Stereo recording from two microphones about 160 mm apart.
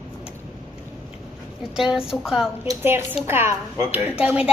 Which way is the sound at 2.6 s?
20° right (ahead or behind).